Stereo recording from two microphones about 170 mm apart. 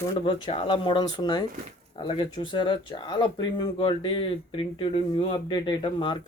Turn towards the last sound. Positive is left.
turn(degrees=30)  # may be behind; listen again after turning